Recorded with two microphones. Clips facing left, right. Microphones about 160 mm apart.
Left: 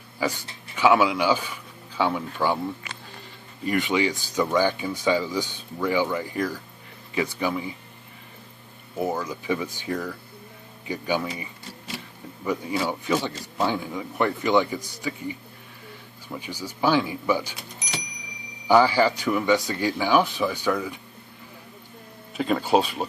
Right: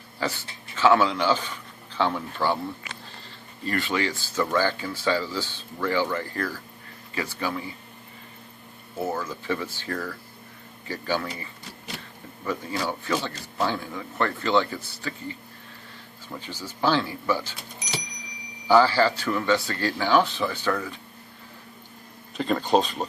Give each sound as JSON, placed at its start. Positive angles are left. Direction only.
{"t": 0.2, "sound": "a man's voice", "side_deg": 15}
{"t": 3.6, "sound": "speech", "side_deg": 15}
{"t": 9.0, "sound": "speech", "side_deg": 15}
{"t": 12.4, "sound": "speech", "side_deg": 10}
{"t": 18.7, "sound": "speech", "side_deg": 15}
{"t": 22.4, "sound": "speech", "side_deg": 5}